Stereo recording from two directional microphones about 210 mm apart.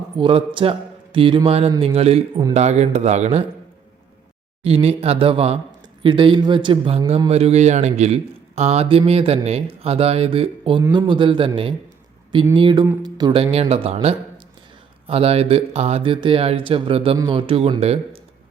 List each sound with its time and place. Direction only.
0.2 s a man's voice: 25° right (ahead or behind)
4.6 s a man's voice: 25° right (ahead or behind)